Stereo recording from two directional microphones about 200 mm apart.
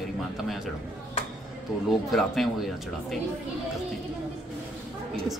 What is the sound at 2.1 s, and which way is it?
A man's voice, centre (ahead or behind).